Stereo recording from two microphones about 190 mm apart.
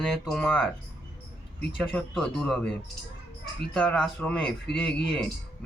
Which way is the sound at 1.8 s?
5° left (ahead or behind).